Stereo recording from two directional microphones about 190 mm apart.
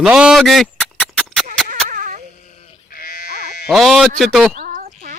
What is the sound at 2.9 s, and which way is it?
Sheep, 50° left (ahead or behind).